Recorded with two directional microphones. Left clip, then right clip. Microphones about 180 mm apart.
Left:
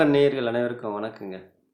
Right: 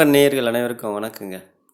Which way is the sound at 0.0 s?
50° right (ahead or behind).